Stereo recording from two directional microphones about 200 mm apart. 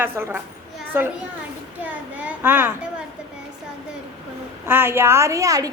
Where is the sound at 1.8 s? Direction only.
5° right (ahead or behind).